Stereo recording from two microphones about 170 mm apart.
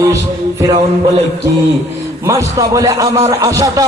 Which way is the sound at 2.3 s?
20° right (ahead or behind).